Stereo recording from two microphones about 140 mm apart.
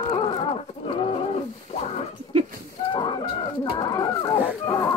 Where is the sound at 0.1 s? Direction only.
40° left (ahead or behind).